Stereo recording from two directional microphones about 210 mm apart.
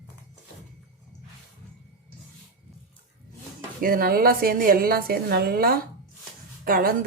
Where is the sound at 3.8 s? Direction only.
45° right (ahead or behind).